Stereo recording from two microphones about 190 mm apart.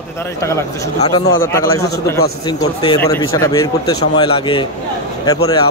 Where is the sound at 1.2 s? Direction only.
90° left.